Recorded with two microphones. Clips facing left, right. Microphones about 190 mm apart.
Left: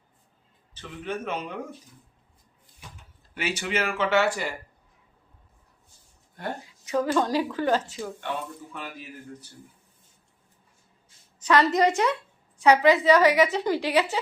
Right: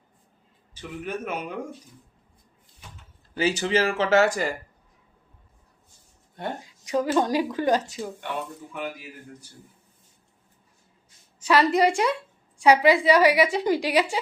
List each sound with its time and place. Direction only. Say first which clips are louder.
0.7 s a woman's voice: right 1 dB; 10° right (ahead or behind)
3.3 s speech: right 6 dB; 35° right (ahead or behind)
6.3 s a woman's voice: right 1 dB; 20° right (ahead or behind)
11.4 s a woman's voice: right 1 dB; 10° right (ahead or behind)